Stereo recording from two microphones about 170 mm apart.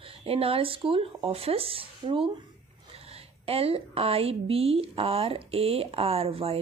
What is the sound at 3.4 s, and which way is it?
Speech, 35° right (ahead or behind).